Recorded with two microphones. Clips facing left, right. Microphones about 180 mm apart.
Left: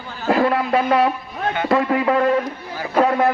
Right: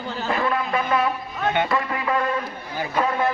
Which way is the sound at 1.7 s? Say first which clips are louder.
Left 7 dB; 45° left (ahead or behind).